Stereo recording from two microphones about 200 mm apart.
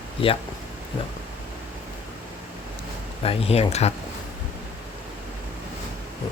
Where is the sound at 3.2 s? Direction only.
30° left (ahead or behind).